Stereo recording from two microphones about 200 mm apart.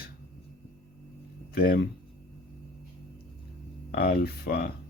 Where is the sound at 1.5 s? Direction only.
45° left (ahead or behind).